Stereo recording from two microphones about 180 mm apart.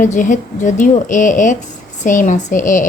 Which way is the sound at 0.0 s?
45° left (ahead or behind).